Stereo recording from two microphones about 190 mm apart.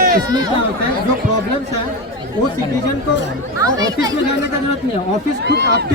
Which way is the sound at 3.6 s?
20° right (ahead or behind).